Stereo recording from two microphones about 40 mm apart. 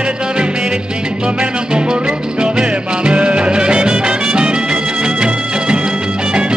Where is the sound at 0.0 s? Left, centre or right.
Right.